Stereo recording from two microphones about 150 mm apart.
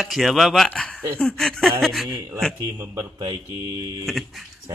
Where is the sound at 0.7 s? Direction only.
5° left (ahead or behind).